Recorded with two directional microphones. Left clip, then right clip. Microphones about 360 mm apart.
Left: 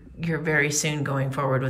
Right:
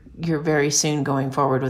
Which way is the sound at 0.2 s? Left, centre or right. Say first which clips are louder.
Right 3 dB; centre.